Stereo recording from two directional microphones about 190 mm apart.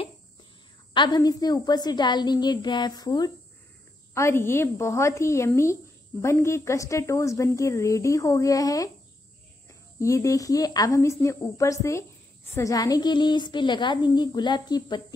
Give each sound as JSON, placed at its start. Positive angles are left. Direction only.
{"t": 0.9, "sound": "a woman's voice", "side_deg": 25}
{"t": 9.9, "sound": "a woman's voice", "side_deg": 15}